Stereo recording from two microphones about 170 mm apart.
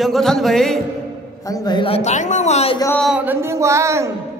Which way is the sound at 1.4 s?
20° left (ahead or behind).